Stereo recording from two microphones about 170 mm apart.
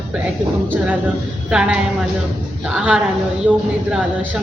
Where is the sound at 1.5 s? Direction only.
5° right (ahead or behind).